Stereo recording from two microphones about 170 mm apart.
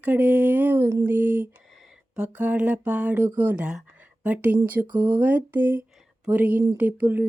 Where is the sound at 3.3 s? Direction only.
10° right (ahead or behind).